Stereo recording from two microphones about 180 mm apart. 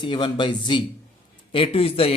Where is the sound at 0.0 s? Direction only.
25° left (ahead or behind).